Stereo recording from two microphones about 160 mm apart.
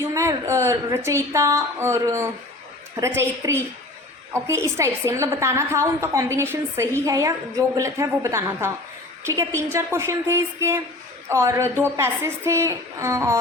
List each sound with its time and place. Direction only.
0.0 s a woman's voice: 20° right (ahead or behind)